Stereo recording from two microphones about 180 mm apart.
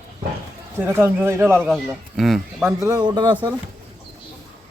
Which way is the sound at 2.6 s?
15° right (ahead or behind).